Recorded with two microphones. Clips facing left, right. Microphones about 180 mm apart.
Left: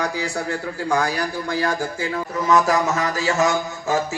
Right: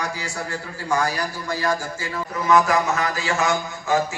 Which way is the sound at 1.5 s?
60° left (ahead or behind).